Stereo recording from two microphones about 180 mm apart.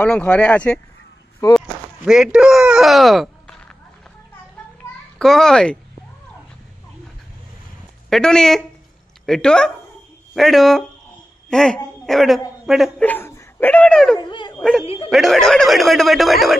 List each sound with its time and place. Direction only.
0.0 s speech: 5° left (ahead or behind)
1.4 s speech: 20° left (ahead or behind)
2.0 s speech: 5° right (ahead or behind)
5.2 s speech: centre (ahead or behind)
8.1 s a woman's voice: 5° left (ahead or behind)
13.0 s speech: 10° left (ahead or behind)
14.1 s speech: 25° left (ahead or behind)
14.6 s speech: centre (ahead or behind)